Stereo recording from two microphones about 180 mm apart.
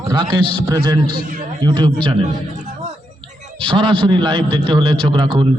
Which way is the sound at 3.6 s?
30° right (ahead or behind).